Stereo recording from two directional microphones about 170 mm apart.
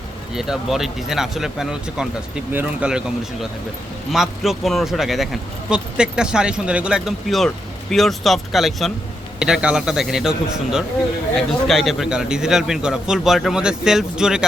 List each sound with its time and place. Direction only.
0.3 s speech: 5° right (ahead or behind)
4.1 s speech: centre (ahead or behind)